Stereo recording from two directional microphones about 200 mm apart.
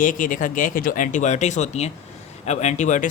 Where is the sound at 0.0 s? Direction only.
40° left (ahead or behind).